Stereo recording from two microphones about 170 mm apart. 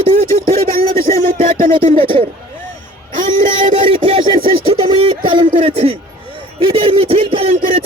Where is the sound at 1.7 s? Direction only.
30° right (ahead or behind).